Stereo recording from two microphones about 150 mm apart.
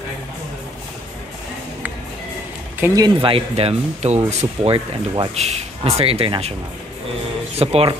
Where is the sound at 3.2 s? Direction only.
35° right (ahead or behind).